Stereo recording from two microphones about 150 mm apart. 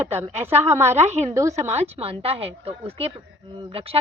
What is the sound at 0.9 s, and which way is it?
Speech, 45° right (ahead or behind).